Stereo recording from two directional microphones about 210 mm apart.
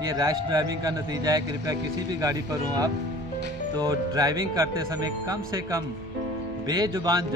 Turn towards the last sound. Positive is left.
turn(degrees=-20)  # may be behind; listen again after turning